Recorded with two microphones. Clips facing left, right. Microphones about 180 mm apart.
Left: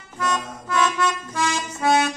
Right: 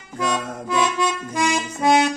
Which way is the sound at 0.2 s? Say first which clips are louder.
Right 2 dB; 10° right (ahead or behind).